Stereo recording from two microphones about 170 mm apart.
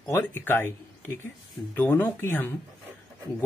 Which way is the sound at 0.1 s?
15° left (ahead or behind).